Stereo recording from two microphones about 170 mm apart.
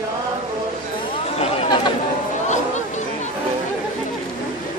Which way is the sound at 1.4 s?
35° left (ahead or behind).